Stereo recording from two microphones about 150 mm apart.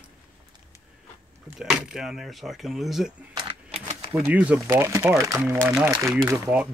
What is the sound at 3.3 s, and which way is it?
Typewriter, 30° right (ahead or behind).